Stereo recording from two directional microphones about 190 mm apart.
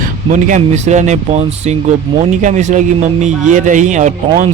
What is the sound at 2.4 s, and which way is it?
A man's voice, 40° right (ahead or behind).